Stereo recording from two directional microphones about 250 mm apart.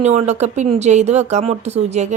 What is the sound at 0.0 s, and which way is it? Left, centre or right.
Speech, right.